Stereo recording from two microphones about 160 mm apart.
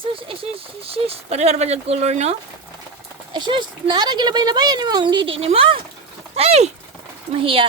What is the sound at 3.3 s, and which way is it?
Speech, 30° right (ahead or behind).